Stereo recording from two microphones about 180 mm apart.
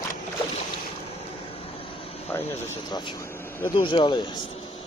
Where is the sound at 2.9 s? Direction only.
25° left (ahead or behind).